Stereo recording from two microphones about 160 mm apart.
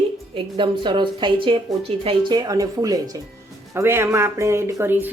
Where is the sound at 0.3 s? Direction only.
30° right (ahead or behind).